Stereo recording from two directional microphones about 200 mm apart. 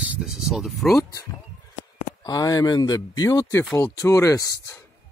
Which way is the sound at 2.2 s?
20° left (ahead or behind).